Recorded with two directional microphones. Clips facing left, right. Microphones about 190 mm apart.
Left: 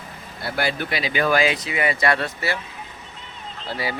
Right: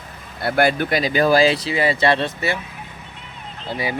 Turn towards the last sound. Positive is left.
turn(degrees=-20)  # may be behind; listen again after turning